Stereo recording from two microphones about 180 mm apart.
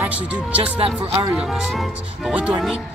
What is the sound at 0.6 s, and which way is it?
Speech, 30° right (ahead or behind).